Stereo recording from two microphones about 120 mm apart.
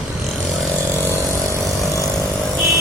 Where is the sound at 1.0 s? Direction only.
20° left (ahead or behind).